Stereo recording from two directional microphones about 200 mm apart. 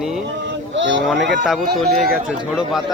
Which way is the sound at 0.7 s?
65° right (ahead or behind).